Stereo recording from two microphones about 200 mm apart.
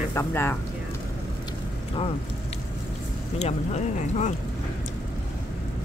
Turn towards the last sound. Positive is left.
turn(degrees=35)  # may be behind; listen again after turning